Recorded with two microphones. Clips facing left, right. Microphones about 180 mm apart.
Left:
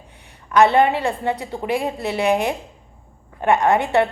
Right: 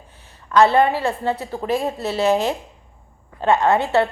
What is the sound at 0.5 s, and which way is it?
A woman's voice, 20° left (ahead or behind).